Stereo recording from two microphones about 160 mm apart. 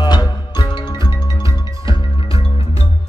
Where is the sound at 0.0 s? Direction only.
25° left (ahead or behind).